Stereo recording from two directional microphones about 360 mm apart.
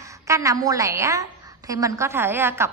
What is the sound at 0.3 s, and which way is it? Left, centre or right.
A woman's voice, centre.